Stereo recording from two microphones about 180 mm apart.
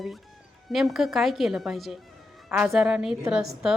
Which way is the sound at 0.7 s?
Centre (ahead or behind).